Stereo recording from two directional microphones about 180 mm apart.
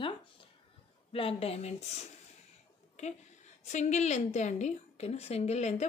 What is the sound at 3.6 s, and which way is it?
Speech, 40° left (ahead or behind).